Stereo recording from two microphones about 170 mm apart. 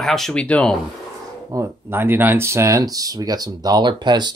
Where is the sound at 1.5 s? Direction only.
15° right (ahead or behind).